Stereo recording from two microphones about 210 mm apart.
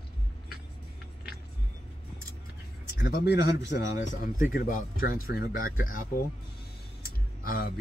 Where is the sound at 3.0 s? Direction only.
50° left (ahead or behind).